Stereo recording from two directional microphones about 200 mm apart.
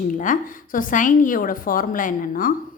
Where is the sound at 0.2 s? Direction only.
40° left (ahead or behind).